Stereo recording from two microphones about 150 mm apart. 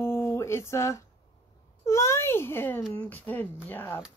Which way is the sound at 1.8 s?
20° left (ahead or behind).